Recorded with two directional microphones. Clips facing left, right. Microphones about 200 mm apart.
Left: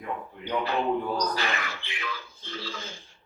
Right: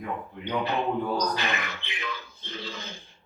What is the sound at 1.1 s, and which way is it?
Speech, 20° right (ahead or behind).